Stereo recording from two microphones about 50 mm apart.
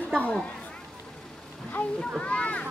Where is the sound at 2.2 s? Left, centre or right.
Left.